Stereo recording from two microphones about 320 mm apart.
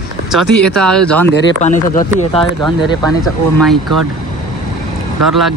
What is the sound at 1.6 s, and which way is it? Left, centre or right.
Speech, left.